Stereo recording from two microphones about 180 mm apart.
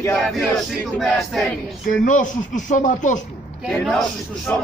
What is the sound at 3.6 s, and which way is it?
Speech, 5° left (ahead or behind).